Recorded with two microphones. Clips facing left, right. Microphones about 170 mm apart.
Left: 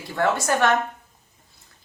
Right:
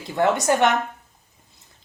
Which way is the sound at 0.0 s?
20° right (ahead or behind).